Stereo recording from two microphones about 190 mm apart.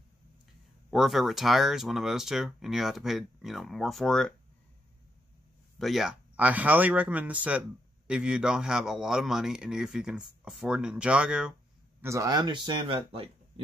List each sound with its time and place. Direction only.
0.8 s speech: centre (ahead or behind)
5.8 s speech: centre (ahead or behind)
12.0 s speech: 15° right (ahead or behind)